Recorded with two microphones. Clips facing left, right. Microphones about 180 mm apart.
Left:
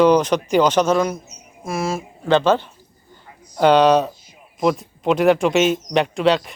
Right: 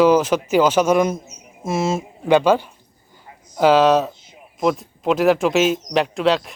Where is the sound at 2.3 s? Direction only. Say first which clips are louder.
Right 1 dB; 10° right (ahead or behind).